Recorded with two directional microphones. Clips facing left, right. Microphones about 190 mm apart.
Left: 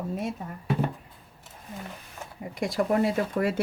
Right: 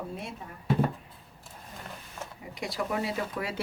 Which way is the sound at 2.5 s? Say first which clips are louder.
Left 7 dB; 50° left (ahead or behind).